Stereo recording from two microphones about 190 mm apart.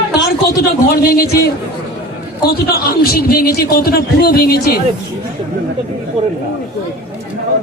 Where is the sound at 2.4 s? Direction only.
50° left (ahead or behind).